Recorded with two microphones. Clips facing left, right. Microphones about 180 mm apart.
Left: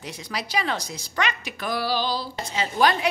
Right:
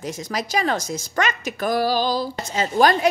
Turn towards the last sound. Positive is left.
turn(degrees=-45)  # may be behind; listen again after turning